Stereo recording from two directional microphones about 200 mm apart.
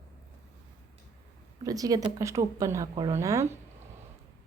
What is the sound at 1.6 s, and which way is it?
Speech, 15° right (ahead or behind).